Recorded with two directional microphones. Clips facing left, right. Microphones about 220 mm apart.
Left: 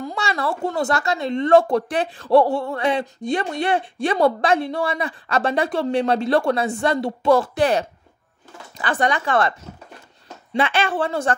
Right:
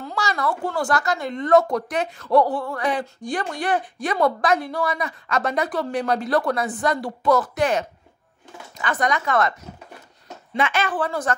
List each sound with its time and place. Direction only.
0.0 s speech: 25° left (ahead or behind)
10.5 s speech: 30° left (ahead or behind)